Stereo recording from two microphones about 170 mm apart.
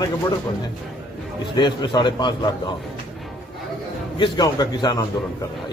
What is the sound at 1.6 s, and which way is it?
Speech, 25° left (ahead or behind).